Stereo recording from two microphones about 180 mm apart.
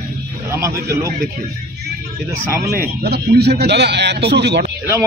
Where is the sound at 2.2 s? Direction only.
15° right (ahead or behind).